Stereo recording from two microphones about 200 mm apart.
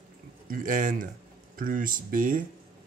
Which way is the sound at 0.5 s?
40° right (ahead or behind).